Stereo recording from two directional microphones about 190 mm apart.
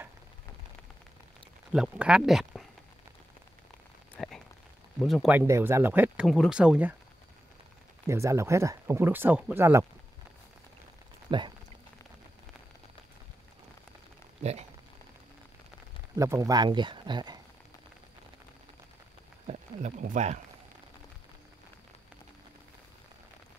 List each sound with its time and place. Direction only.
1.7 s speech: 5° right (ahead or behind)
4.2 s a sound: centre (ahead or behind)
5.0 s speech: centre (ahead or behind)
5.5 s speech: 15° right (ahead or behind)
6.2 s speech: centre (ahead or behind)
8.1 s speech: 15° right (ahead or behind)
11.2 s speech: 25° right (ahead or behind)
16.2 s speech: 15° right (ahead or behind)
19.4 s a sound: 40° right (ahead or behind)